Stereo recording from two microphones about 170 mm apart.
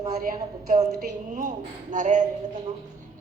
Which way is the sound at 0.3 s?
40° right (ahead or behind).